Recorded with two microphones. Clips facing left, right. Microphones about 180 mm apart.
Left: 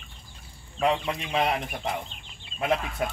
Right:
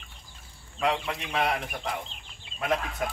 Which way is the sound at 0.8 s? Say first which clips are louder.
Left 3 dB; 20° left (ahead or behind).